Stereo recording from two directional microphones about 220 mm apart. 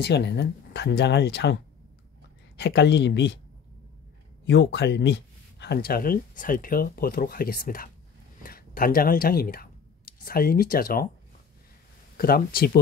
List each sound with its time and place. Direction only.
0.0 s speech: 50° left (ahead or behind)
4.5 s speech: 50° left (ahead or behind)
12.2 s speech: 40° left (ahead or behind)